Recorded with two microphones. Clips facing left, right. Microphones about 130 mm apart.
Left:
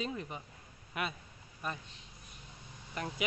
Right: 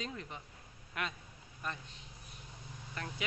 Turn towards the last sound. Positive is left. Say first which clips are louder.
# left 4 dB
turn(degrees=15)  # may be behind; listen again after turning